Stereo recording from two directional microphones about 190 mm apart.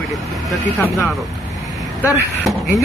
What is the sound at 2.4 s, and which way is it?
Speech, centre (ahead or behind).